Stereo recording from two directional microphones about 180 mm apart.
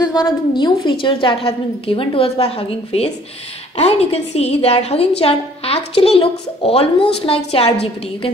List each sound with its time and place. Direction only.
0.0 s a woman's voice: 25° left (ahead or behind)